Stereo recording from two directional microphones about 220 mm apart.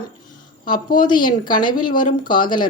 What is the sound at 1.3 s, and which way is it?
A woman's voice, 20° left (ahead or behind).